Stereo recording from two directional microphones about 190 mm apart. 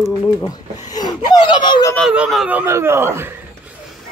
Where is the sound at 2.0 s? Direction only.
Centre (ahead or behind).